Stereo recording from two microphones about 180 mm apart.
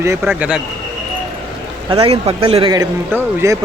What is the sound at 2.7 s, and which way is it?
Speech, 15° right (ahead or behind).